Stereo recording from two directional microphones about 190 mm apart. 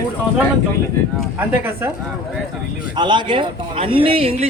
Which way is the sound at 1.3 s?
10° right (ahead or behind).